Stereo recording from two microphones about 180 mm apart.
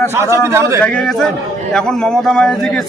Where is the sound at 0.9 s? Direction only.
5° left (ahead or behind).